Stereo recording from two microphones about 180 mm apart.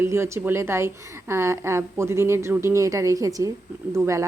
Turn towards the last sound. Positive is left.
turn(degrees=-15)  # may be behind; listen again after turning